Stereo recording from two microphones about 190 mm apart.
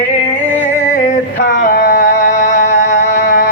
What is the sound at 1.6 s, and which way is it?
Music, 45° left (ahead or behind).